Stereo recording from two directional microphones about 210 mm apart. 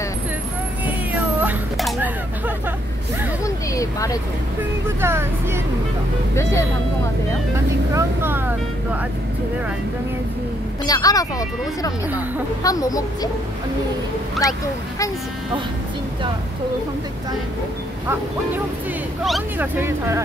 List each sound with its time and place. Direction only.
0.8 s a sound: 10° right (ahead or behind)
3.4 s a sound: 15° left (ahead or behind)
4.8 s speech: 10° right (ahead or behind)
6.3 s speech: 15° left (ahead or behind)
7.9 s speech: 10° right (ahead or behind)
10.9 s speech: 15° left (ahead or behind)
19.2 s speech: centre (ahead or behind)